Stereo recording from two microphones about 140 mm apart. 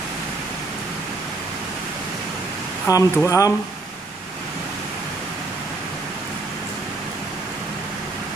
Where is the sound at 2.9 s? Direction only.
25° left (ahead or behind).